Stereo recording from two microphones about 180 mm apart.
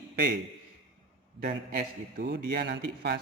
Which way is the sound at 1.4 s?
60° right (ahead or behind).